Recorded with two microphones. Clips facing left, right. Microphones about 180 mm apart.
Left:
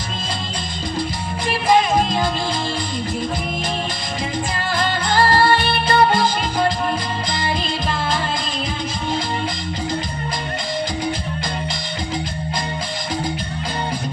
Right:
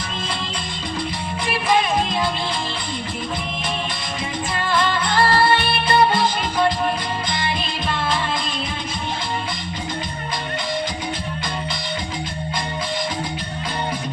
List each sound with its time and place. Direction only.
4.8 s music: 40° left (ahead or behind)